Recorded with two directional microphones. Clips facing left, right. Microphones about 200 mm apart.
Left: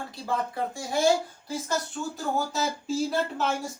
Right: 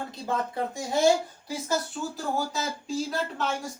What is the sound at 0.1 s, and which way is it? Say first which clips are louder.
Speech: left 3 dB; 20° right (ahead or behind).